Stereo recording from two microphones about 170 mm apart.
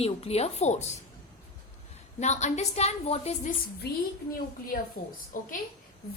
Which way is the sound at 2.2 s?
45° left (ahead or behind).